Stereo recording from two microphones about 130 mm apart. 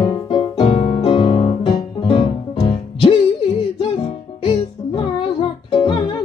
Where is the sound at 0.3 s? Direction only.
45° left (ahead or behind).